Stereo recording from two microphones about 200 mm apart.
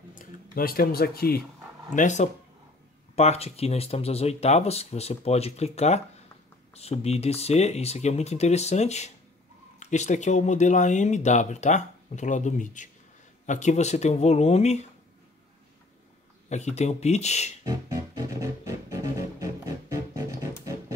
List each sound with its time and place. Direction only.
0.1 s speech: 45° left (ahead or behind)
2.0 s speech: 35° left (ahead or behind)
16.4 s speech: 35° left (ahead or behind)
17.6 s music: 15° right (ahead or behind)